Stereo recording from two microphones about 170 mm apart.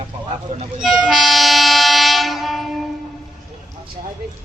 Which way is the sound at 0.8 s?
Centre (ahead or behind).